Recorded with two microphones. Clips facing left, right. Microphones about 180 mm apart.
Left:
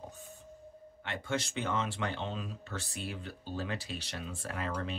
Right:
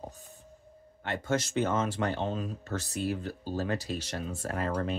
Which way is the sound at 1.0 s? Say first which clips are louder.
Right 5 dB; 40° right (ahead or behind).